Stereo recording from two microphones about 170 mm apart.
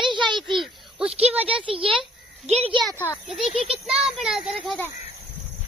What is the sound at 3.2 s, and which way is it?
A child's voice, centre (ahead or behind).